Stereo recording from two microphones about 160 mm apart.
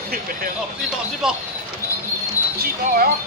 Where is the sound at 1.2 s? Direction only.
5° right (ahead or behind).